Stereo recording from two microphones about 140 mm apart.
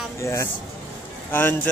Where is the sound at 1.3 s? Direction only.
15° left (ahead or behind).